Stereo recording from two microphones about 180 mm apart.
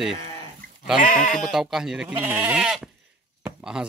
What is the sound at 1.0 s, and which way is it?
Sheep, 45° left (ahead or behind).